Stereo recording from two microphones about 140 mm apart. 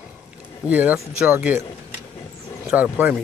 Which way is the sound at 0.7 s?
10° right (ahead or behind).